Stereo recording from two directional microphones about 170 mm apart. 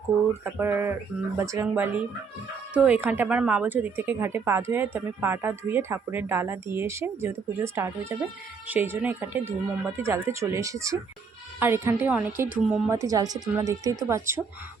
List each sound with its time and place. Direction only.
0.4 s a woman's voice: 15° right (ahead or behind)
12.9 s a woman's voice: 20° right (ahead or behind)